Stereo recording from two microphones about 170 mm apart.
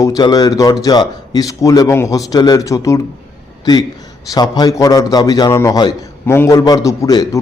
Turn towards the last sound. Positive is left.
turn(degrees=20)  # may be behind; listen again after turning